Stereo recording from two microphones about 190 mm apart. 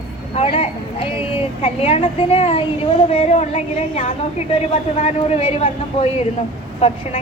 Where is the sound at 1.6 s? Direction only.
35° left (ahead or behind).